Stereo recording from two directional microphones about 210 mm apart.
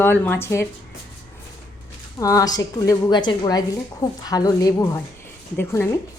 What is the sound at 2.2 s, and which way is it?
Speech, 15° left (ahead or behind).